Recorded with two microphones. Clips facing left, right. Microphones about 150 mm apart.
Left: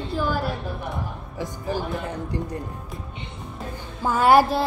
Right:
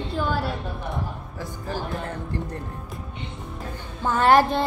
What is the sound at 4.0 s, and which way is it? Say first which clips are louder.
Speech: left 1 dB; 10° left (ahead or behind).